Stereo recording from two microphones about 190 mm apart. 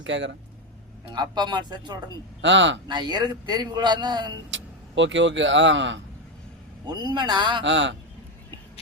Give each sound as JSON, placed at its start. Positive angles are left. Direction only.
{"t": 0.0, "sound": "speech", "side_deg": -75}
{"t": 1.1, "sound": "a man's voice", "side_deg": -25}
{"t": 2.4, "sound": "speech", "side_deg": -75}
{"t": 2.8, "sound": "a man's voice", "side_deg": -20}
{"t": 4.5, "sound": "speech", "side_deg": -75}
{"t": 6.8, "sound": "a man's voice", "side_deg": -20}
{"t": 7.6, "sound": "speech", "side_deg": -75}